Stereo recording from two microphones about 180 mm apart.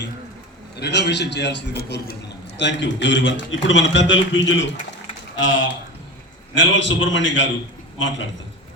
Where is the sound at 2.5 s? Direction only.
80° left.